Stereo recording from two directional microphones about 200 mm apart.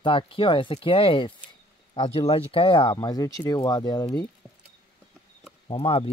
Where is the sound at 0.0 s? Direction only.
25° left (ahead or behind).